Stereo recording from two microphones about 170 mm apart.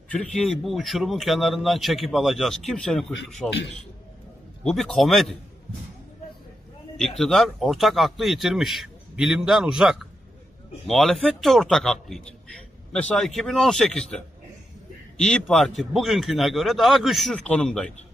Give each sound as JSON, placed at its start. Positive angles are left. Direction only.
{"t": 0.1, "sound": "a man's voice", "side_deg": 5}
{"t": 3.2, "sound": "a man's voice", "side_deg": 80}
{"t": 4.6, "sound": "a man's voice", "side_deg": 0}
{"t": 7.2, "sound": "a man's voice", "side_deg": 0}